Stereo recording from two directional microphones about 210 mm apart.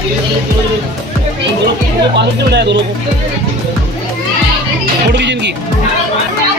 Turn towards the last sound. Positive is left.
turn(degrees=-55)  # may be behind; listen again after turning